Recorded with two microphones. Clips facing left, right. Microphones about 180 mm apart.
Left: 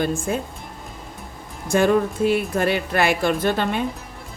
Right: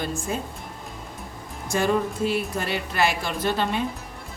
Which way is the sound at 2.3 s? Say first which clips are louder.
Left 6 dB; 55° left (ahead or behind).